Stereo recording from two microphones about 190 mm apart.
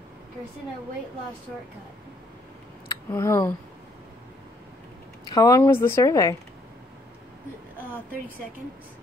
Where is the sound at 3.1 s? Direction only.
15° left (ahead or behind).